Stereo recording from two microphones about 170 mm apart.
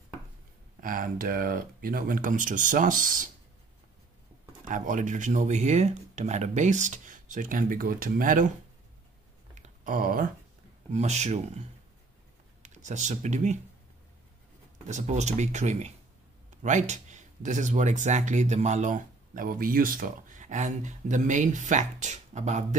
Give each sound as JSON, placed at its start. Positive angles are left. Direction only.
{"t": 0.7, "sound": "speech", "side_deg": -55}
{"t": 4.6, "sound": "speech", "side_deg": -50}
{"t": 9.6, "sound": "a sound", "side_deg": -55}
{"t": 10.9, "sound": "speech", "side_deg": -40}
{"t": 12.6, "sound": "speech", "side_deg": -45}
{"t": 14.9, "sound": "speech", "side_deg": -45}